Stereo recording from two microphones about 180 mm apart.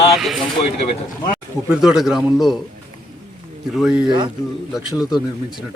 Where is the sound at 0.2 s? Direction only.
Centre (ahead or behind).